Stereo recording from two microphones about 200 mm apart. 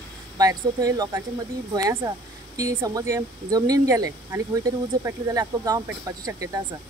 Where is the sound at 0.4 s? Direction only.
15° right (ahead or behind).